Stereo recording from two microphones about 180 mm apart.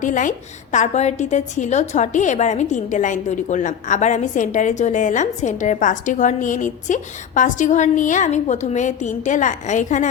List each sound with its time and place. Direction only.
0.0 s a woman's voice: 45° left (ahead or behind)